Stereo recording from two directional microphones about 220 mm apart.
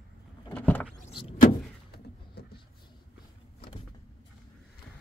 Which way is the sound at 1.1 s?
25° left (ahead or behind).